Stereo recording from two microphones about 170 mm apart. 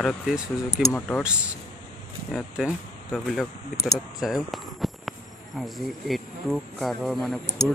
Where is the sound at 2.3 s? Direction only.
5° right (ahead or behind).